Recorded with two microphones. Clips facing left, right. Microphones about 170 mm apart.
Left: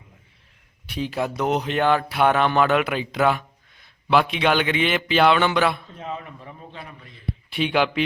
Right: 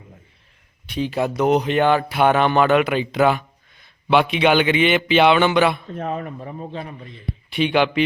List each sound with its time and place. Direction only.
0.9 s speech: centre (ahead or behind)
5.9 s a man's voice: 55° right (ahead or behind)
7.5 s speech: centre (ahead or behind)